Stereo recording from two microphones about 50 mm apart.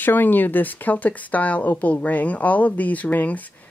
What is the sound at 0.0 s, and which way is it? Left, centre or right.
Speech, left.